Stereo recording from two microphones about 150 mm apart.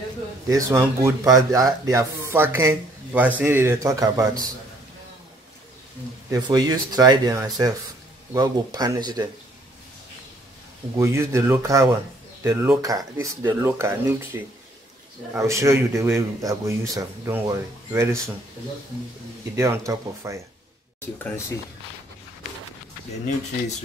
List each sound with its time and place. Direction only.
0.5 s speech: 20° right (ahead or behind)
6.3 s speech: 25° right (ahead or behind)
11.0 s speech: 20° right (ahead or behind)
19.5 s speech: 20° right (ahead or behind)